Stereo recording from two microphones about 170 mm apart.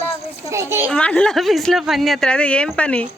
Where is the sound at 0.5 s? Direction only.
15° right (ahead or behind).